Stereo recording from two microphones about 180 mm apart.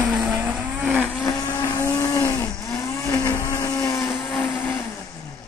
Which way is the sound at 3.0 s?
15° left (ahead or behind).